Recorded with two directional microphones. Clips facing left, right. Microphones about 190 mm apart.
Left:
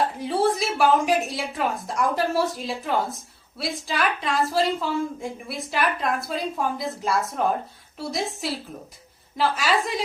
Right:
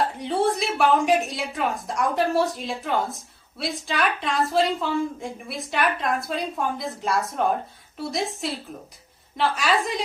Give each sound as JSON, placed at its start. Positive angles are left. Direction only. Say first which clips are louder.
{"t": 0.2, "sound": "a woman's voice", "louder": "left 1 dB", "side_deg": 0}